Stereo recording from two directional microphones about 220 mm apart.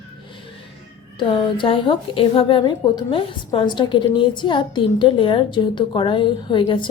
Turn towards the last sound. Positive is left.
turn(degrees=20)  # may be behind; listen again after turning